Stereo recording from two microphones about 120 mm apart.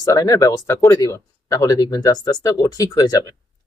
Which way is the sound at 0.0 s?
30° left (ahead or behind).